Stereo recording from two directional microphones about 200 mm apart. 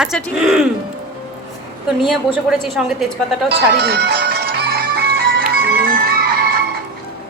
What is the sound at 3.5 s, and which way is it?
Music, 55° right (ahead or behind).